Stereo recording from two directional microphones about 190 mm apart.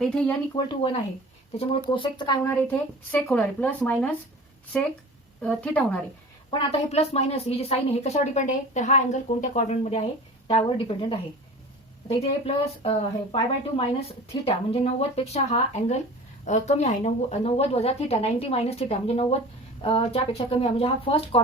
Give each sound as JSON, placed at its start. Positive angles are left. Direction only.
{"t": 0.0, "sound": "speech", "side_deg": 5}
{"t": 0.5, "sound": "speech", "side_deg": 25}
{"t": 5.4, "sound": "speech", "side_deg": 5}
{"t": 6.5, "sound": "a woman's voice", "side_deg": 35}